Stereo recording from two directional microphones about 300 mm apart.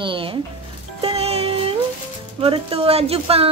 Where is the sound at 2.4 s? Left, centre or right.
Centre.